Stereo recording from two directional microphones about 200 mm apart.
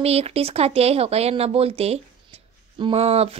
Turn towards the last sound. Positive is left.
turn(degrees=-30)  # may be behind; listen again after turning